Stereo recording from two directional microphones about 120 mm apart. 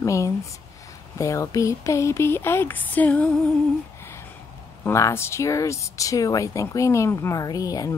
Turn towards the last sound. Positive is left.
turn(degrees=30)  # may be behind; listen again after turning